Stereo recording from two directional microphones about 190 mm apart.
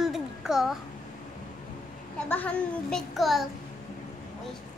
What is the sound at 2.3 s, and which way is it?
A child's voice, 10° left (ahead or behind).